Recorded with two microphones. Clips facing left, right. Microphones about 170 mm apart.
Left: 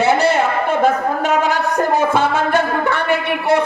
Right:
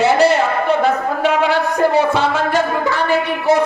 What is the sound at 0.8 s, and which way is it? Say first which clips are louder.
A man's voice: even; 45° left (ahead or behind).